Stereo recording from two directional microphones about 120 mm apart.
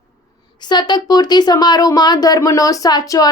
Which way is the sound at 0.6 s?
35° left (ahead or behind).